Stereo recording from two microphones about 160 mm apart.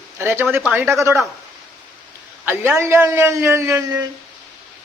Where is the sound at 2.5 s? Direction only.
15° right (ahead or behind).